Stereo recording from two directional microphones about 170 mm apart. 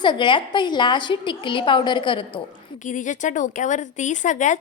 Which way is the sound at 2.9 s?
50° left (ahead or behind).